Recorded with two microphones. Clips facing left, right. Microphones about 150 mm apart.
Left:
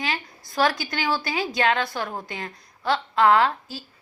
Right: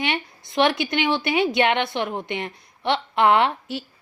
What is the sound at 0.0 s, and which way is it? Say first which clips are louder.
A woman's voice: right 3 dB; 25° right (ahead or behind).